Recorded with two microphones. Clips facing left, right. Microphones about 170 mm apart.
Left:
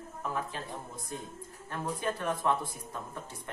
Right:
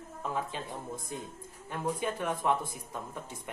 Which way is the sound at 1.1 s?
15° right (ahead or behind).